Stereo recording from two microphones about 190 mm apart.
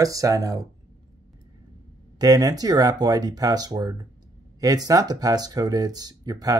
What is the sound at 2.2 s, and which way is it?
Speech, 20° right (ahead or behind).